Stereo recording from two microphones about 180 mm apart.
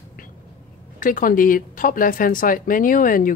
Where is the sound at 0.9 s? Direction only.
50° left (ahead or behind).